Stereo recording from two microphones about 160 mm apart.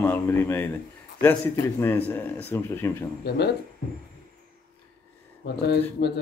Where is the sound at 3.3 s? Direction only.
90° left.